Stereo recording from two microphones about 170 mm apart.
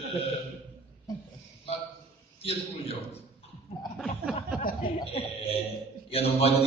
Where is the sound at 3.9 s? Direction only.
5° left (ahead or behind).